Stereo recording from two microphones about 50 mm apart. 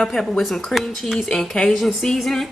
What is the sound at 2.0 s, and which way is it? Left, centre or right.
Speech, centre.